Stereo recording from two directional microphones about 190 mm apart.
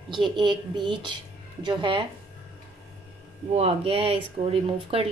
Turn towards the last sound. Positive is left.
turn(degrees=-30)  # may be behind; listen again after turning